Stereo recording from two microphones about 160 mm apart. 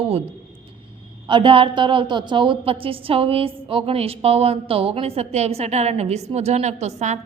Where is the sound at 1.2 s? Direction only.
30° right (ahead or behind).